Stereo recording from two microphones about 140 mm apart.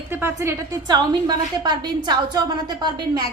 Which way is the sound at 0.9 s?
30° right (ahead or behind).